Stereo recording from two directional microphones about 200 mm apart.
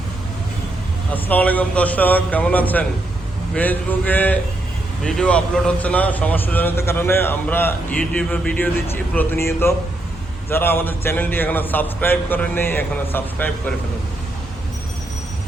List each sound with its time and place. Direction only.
1.1 s a man's voice: 10° left (ahead or behind)